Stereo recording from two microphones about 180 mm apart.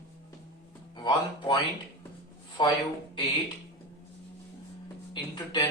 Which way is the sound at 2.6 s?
25° left (ahead or behind).